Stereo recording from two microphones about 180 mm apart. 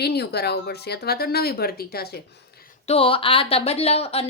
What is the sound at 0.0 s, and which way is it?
Speech, 65° left (ahead or behind).